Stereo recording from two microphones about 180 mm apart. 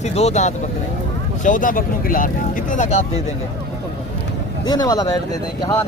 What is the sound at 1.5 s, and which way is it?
Speech, 50° left (ahead or behind).